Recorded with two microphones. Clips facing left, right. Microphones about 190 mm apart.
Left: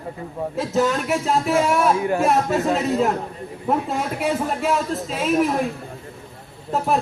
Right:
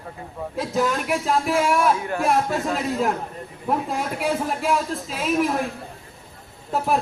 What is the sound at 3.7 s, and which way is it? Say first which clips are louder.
A man's voice: left 2 dB; centre (ahead or behind).